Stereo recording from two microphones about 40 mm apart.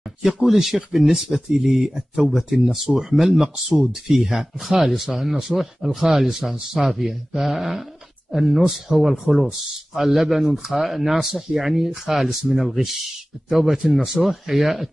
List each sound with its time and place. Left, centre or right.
0.2 s speech: centre
4.1 s speech: centre